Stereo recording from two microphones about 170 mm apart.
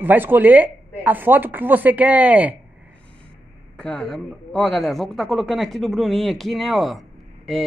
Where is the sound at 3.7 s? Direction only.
5° left (ahead or behind).